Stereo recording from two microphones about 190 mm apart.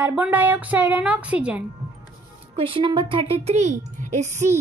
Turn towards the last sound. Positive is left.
turn(degrees=-40)  # may be behind; listen again after turning